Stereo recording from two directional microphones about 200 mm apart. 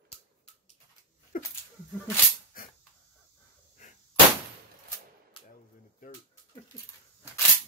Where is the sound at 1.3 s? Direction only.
45° left (ahead or behind).